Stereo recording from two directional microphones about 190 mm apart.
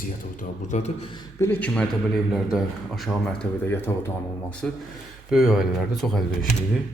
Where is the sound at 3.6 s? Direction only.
10° left (ahead or behind).